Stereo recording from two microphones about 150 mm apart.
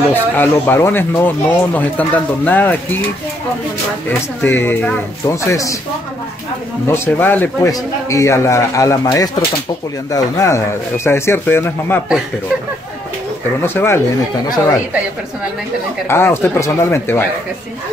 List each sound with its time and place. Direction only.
0.1 s speech: 15° left (ahead or behind)
4.4 s speech: 15° left (ahead or behind)
6.9 s a man's voice: 15° left (ahead or behind)
13.6 s speech: 15° left (ahead or behind)
16.1 s speech: 15° left (ahead or behind)